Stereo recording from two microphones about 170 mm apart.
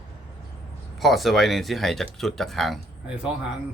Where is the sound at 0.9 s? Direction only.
Centre (ahead or behind).